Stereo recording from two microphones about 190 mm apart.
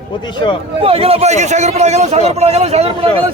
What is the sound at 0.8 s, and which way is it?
A man's voice, 30° right (ahead or behind).